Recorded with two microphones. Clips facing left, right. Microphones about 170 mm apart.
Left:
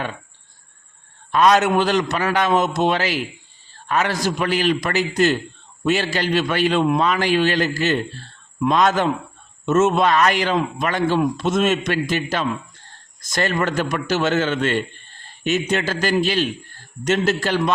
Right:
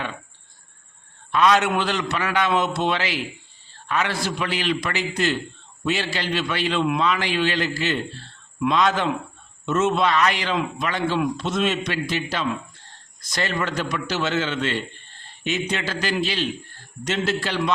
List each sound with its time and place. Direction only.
1.3 s a man's voice: 45° left (ahead or behind)